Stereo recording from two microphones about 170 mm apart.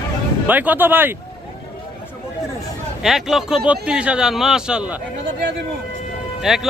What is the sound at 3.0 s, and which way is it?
Speech, centre (ahead or behind).